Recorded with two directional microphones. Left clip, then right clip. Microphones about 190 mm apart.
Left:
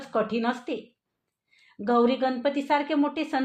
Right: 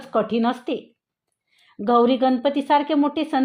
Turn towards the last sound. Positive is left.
turn(degrees=-40)  # may be behind; listen again after turning